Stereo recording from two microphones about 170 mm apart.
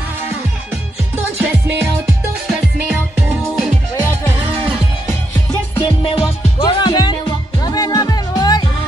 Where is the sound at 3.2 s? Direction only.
15° right (ahead or behind).